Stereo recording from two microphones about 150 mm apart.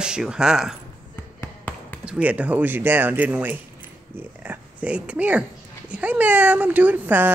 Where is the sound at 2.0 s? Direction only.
10° right (ahead or behind).